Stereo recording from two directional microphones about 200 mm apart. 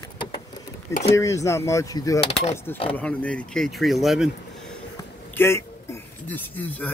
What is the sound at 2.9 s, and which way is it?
Speech, 5° left (ahead or behind).